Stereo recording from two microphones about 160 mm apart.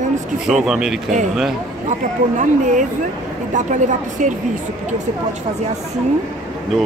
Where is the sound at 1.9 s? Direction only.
50° right (ahead or behind).